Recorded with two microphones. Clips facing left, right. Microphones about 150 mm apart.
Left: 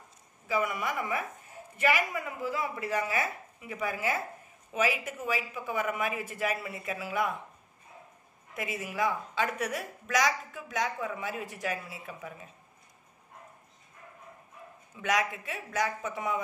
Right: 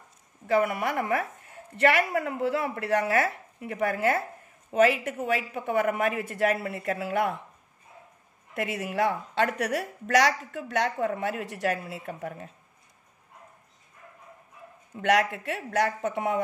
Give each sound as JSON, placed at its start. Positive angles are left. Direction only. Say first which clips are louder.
{"t": 0.5, "sound": "a woman's voice", "louder": "right 6 dB", "side_deg": -60}
{"t": 8.5, "sound": "a woman's voice", "louder": "right 5 dB", "side_deg": -65}
{"t": 15.0, "sound": "a woman's voice", "louder": "right 6 dB", "side_deg": -65}